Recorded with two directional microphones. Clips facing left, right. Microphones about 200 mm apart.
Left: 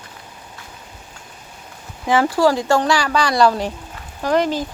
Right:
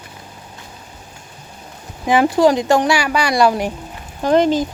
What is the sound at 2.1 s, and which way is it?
Speech, 20° right (ahead or behind).